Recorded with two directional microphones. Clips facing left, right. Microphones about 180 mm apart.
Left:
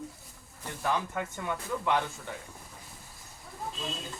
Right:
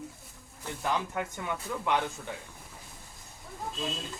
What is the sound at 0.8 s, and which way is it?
Speech, 15° right (ahead or behind).